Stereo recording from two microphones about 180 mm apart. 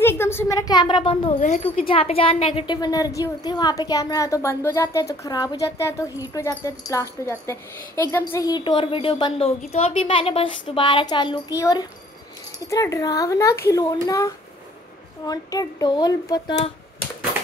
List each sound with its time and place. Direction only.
0.0 s speech: 15° left (ahead or behind)
1.4 s speech: 45° left (ahead or behind)
1.9 s a woman's voice: 30° left (ahead or behind)